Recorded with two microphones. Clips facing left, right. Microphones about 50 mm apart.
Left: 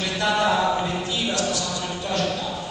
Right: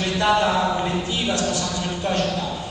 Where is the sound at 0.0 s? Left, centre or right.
Right.